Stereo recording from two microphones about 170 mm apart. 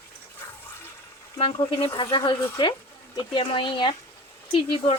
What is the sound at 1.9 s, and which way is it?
Speech, 25° left (ahead or behind).